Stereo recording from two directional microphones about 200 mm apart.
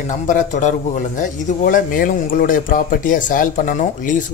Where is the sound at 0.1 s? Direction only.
40° left (ahead or behind).